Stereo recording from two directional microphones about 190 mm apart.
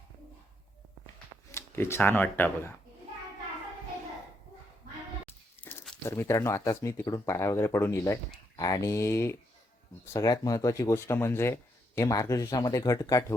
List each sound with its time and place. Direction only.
1.5 s speech: 15° left (ahead or behind)
5.6 s a sound: 10° left (ahead or behind)
6.1 s speech: 15° left (ahead or behind)